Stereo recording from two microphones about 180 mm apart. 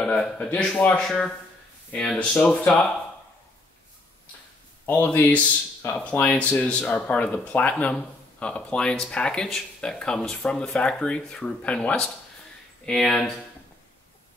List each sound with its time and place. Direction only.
0.0 s speech: 5° left (ahead or behind)
4.8 s speech: 10° left (ahead or behind)